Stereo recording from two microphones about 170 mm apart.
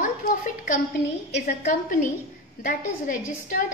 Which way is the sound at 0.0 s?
50° left (ahead or behind).